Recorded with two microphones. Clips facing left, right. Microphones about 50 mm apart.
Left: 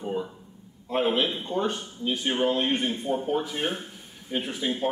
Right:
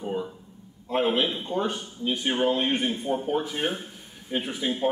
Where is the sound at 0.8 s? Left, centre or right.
Centre.